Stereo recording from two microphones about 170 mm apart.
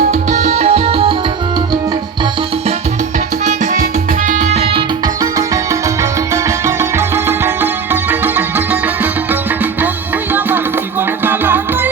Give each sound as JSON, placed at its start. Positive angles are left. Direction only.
{"t": 0.1, "sound": "music", "side_deg": -45}
{"t": 4.3, "sound": "music", "side_deg": -40}
{"t": 6.0, "sound": "music", "side_deg": -15}
{"t": 11.3, "sound": "music", "side_deg": -10}